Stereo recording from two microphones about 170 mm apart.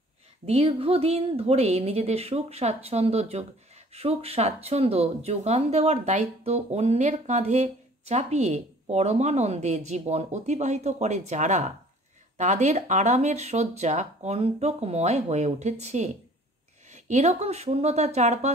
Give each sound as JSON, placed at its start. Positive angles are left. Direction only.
{"t": 0.5, "sound": "speech", "side_deg": -35}